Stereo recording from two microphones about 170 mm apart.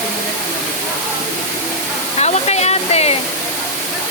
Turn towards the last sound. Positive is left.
turn(degrees=40)  # may be behind; listen again after turning